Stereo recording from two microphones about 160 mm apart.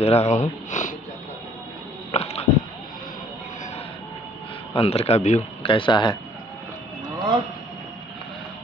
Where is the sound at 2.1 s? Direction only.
40° left (ahead or behind).